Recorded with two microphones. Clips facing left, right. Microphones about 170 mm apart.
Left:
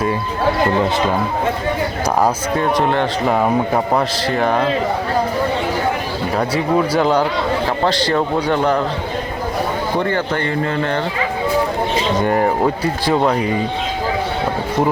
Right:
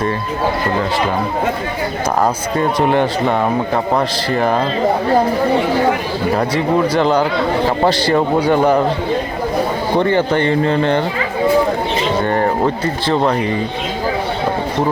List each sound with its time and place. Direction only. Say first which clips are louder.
2.6 s a man's voice: right 3 dB; 10° right (ahead or behind)
3.9 s speech: right 1 dB; centre (ahead or behind)
6.3 s speech: right 1 dB; 5° left (ahead or behind)
7.9 s a man's voice: right 2 dB; 10° right (ahead or behind)
10.1 s speech: right 5 dB; 20° right (ahead or behind)
12.2 s speech: left 1 dB; 5° left (ahead or behind)